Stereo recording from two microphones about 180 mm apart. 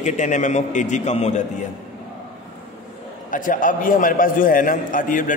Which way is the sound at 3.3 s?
45° left (ahead or behind).